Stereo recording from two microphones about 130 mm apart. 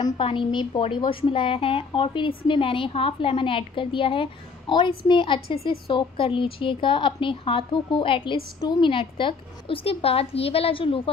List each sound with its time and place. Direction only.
0.2 s a woman's voice: 45° left (ahead or behind)